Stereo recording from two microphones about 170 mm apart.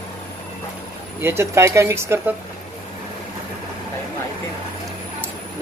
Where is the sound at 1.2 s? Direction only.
15° right (ahead or behind).